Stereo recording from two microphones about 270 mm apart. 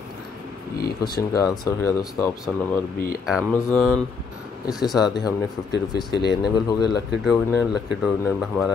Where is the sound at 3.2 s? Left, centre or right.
Centre.